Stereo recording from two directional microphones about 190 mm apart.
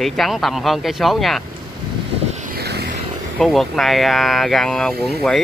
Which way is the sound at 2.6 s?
60° right (ahead or behind).